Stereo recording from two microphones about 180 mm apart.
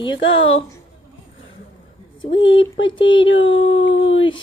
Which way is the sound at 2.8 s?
30° left (ahead or behind).